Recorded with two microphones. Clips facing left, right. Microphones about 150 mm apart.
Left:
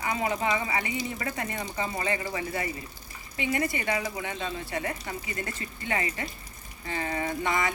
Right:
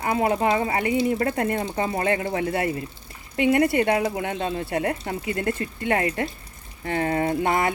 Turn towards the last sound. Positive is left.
turn(degrees=-55)  # may be behind; listen again after turning